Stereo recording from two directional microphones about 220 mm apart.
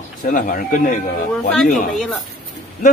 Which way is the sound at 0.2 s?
40° left (ahead or behind).